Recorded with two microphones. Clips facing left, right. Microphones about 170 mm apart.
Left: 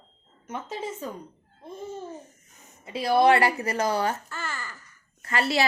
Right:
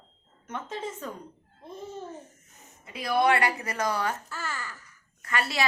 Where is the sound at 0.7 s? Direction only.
10° left (ahead or behind).